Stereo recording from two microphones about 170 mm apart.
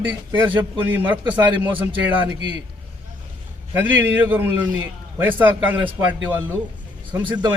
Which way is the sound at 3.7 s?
10° right (ahead or behind).